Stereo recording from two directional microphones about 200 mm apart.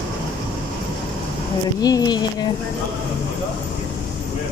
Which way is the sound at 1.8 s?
20° left (ahead or behind).